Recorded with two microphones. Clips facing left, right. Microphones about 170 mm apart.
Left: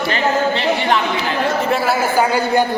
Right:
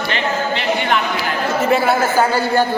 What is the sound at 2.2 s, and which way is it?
Speech, 15° left (ahead or behind).